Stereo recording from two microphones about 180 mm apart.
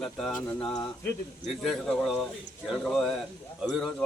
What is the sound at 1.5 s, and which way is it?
Speech, centre (ahead or behind).